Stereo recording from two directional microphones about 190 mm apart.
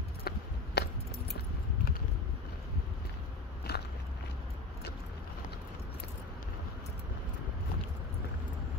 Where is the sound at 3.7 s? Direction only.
60° left (ahead or behind).